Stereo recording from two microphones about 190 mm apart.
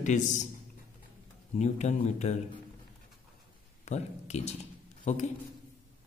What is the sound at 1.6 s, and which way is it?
Speech, 35° left (ahead or behind).